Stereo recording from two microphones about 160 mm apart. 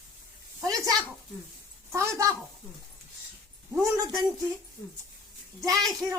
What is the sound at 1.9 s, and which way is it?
Speech, 20° right (ahead or behind).